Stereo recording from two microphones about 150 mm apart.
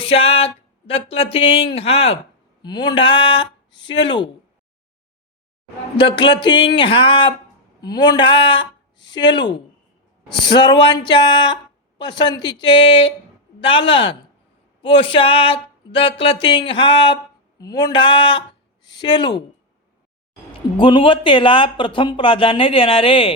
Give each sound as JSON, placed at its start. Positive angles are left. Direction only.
{"t": 0.0, "sound": "speech", "side_deg": 40}
{"t": 2.6, "sound": "speech", "side_deg": 30}
{"t": 6.0, "sound": "speech", "side_deg": 30}
{"t": 20.7, "sound": "speech", "side_deg": 35}